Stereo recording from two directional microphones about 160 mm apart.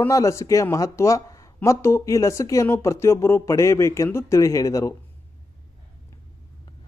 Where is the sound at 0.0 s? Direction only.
20° left (ahead or behind).